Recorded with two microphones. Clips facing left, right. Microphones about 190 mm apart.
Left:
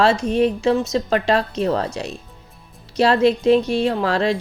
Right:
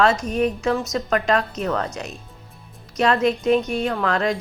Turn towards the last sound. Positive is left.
turn(degrees=30)  # may be behind; listen again after turning